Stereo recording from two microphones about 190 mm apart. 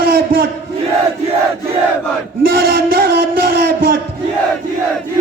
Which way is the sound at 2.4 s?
50° right (ahead or behind).